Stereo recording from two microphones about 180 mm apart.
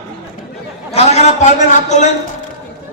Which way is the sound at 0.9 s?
40° left (ahead or behind).